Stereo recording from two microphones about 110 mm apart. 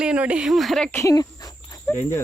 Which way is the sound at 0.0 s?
10° right (ahead or behind).